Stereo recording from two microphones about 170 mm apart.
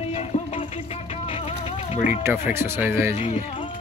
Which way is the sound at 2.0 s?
50° left (ahead or behind).